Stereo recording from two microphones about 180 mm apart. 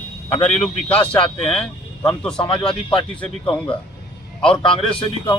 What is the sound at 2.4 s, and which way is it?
Speech, 30° left (ahead or behind).